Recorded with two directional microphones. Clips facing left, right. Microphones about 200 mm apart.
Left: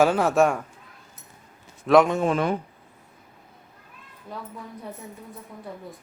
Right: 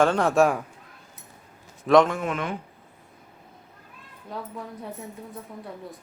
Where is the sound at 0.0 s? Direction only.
5° left (ahead or behind).